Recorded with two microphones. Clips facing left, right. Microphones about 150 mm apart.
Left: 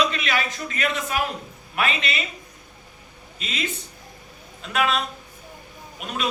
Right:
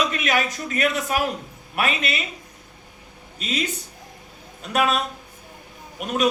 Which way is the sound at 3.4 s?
40° right (ahead or behind).